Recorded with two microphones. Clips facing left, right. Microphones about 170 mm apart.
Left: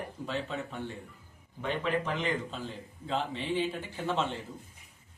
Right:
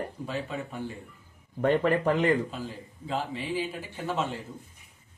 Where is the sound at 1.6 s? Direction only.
60° right (ahead or behind).